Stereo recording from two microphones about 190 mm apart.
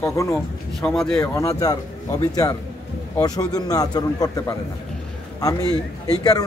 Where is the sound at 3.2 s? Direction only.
20° left (ahead or behind).